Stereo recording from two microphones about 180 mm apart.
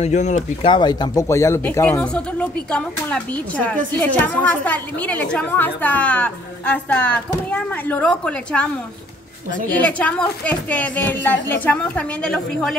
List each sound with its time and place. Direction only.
0.0 s speech: 40° left (ahead or behind)
0.7 s speech: 25° left (ahead or behind); by 8.6 s 5° left (ahead or behind)
9.7 s speech: 5° left (ahead or behind)